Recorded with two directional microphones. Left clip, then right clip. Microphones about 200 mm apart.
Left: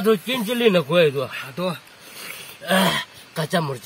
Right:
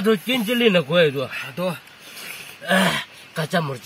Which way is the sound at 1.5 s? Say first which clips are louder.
Even; 15° right (ahead or behind).